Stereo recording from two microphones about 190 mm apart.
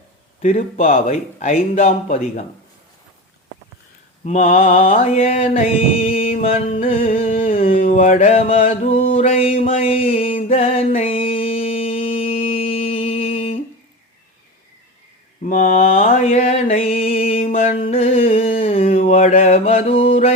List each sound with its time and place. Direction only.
0.4 s speech: 40° left (ahead or behind)
4.2 s mantra: 35° left (ahead or behind)
4.9 s speech: 35° left (ahead or behind)
7.2 s a sound: 35° left (ahead or behind)
15.4 s mantra: 45° left (ahead or behind)
18.6 s a sound: 35° left (ahead or behind)